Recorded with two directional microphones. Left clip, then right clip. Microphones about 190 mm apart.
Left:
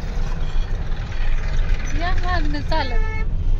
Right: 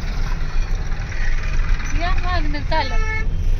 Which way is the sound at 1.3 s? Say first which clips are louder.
Right 3 dB; 10° right (ahead or behind).